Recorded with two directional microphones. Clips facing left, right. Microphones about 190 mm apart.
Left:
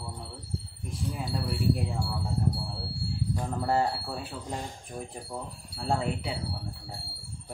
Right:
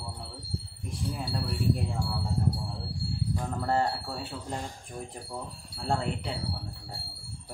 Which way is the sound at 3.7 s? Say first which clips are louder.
Left 1 dB; 5° left (ahead or behind).